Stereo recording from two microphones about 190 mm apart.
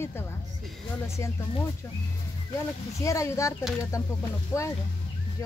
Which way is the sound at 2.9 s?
15° left (ahead or behind).